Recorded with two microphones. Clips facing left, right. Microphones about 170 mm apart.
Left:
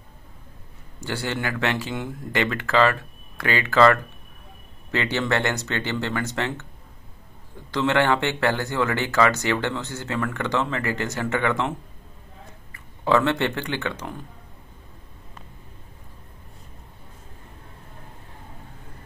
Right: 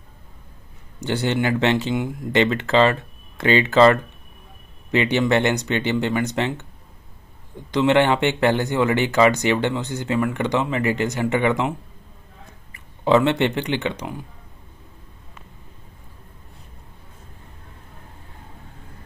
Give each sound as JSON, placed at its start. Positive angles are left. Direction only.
{"t": 1.0, "sound": "speech", "side_deg": -20}
{"t": 7.7, "sound": "speech", "side_deg": -20}
{"t": 12.7, "sound": "speech", "side_deg": -20}